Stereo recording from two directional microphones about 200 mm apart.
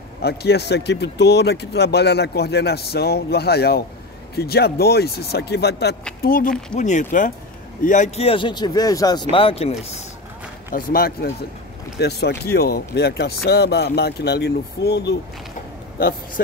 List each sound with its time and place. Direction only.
0.2 s speech: 55° left (ahead or behind); by 10.0 s 30° left (ahead or behind)
10.7 s speech: 45° left (ahead or behind)